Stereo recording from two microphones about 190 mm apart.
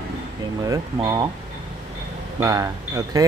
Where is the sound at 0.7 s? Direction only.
20° right (ahead or behind).